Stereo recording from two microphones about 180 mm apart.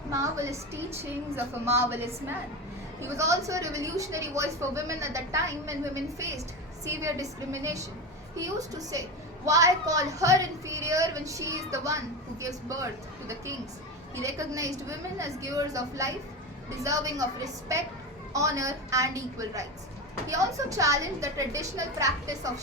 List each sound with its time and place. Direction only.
0.1 s a woman's voice: 15° right (ahead or behind)